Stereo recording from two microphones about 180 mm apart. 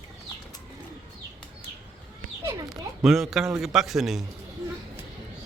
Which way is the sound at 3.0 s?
Centre (ahead or behind).